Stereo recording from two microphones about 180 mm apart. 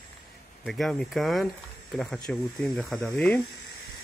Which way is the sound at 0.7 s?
Centre (ahead or behind).